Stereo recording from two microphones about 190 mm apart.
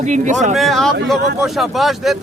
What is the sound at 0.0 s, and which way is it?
Speech, 40° right (ahead or behind).